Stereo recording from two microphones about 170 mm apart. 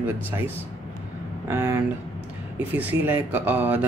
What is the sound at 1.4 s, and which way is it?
Speech, 15° right (ahead or behind).